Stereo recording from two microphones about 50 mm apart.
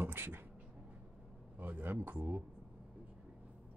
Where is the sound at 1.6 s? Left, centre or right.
Right.